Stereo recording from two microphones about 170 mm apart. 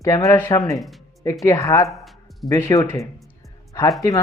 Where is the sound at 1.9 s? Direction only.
Centre (ahead or behind).